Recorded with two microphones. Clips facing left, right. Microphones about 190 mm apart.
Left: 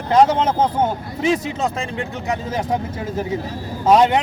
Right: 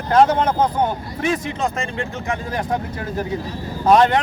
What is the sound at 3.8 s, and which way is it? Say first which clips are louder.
Speech: even; 5° left (ahead or behind).